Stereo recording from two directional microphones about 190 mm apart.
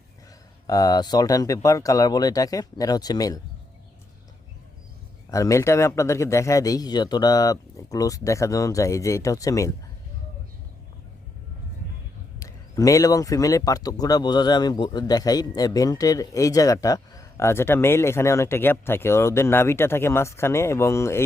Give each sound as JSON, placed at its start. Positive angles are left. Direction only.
{"t": 0.7, "sound": "speech", "side_deg": 20}
{"t": 5.3, "sound": "speech", "side_deg": 15}
{"t": 12.4, "sound": "speech", "side_deg": 20}